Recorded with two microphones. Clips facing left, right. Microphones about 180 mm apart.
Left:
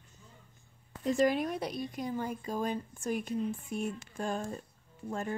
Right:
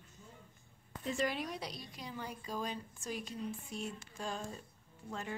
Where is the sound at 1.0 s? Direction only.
45° left (ahead or behind).